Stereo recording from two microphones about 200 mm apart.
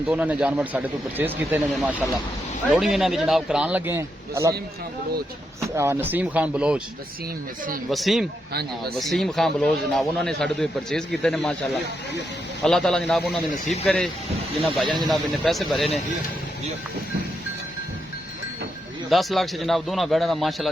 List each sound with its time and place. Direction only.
0.1 s a man's voice: 5° right (ahead or behind)
5.7 s speech: 15° right (ahead or behind)
7.9 s a man's voice: centre (ahead or behind)
15.1 s a man's voice: centre (ahead or behind)
19.1 s a man's voice: centre (ahead or behind)